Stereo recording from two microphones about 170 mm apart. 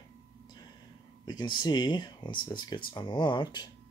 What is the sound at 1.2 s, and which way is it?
Speech, 25° left (ahead or behind).